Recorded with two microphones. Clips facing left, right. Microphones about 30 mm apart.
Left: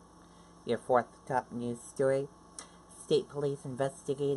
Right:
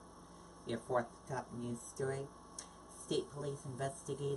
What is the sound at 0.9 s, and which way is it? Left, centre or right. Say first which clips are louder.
Speech: left 6 dB; left.